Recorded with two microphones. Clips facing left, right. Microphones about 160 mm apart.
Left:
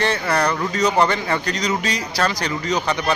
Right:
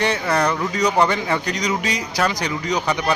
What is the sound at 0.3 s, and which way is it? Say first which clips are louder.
Speech: even; centre (ahead or behind).